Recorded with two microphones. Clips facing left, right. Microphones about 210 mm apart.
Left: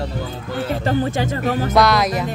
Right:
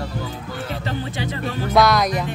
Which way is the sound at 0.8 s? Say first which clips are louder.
Left 8 dB; 45° left (ahead or behind).